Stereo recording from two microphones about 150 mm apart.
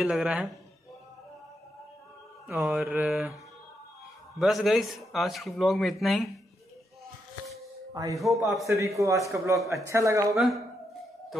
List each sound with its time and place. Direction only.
0.0 s speech: 5° right (ahead or behind)
2.5 s a man's voice: 5° right (ahead or behind)
4.4 s a man's voice: centre (ahead or behind)
7.9 s speech: 25° right (ahead or behind)
8.2 s a man's voice: centre (ahead or behind)
8.6 s a man's voice: 20° right (ahead or behind)
10.3 s a man's voice: centre (ahead or behind)